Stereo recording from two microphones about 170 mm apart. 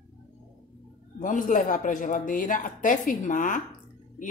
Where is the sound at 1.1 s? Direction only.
50° left (ahead or behind).